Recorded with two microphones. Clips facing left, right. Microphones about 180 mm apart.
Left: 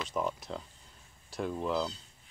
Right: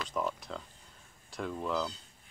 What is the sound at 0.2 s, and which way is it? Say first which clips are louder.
Speech: left 1 dB; 10° left (ahead or behind).